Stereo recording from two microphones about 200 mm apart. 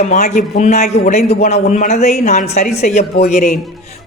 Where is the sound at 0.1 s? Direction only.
40° left (ahead or behind).